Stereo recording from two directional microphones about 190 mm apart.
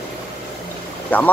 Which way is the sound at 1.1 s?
10° left (ahead or behind).